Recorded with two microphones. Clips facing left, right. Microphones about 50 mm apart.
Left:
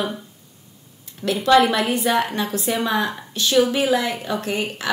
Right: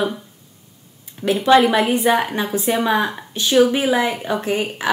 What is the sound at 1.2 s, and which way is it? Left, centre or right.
A woman's voice, right.